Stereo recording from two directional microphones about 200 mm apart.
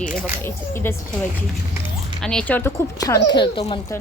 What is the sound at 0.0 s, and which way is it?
Speech, 10° left (ahead or behind).